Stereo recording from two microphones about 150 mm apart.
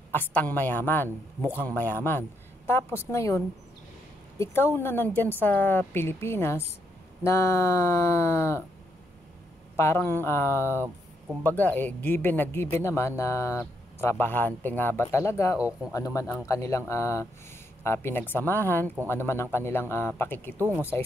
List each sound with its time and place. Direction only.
0.1 s speech: 10° left (ahead or behind)
9.8 s speech: 15° left (ahead or behind)
20.5 s speech: 15° right (ahead or behind)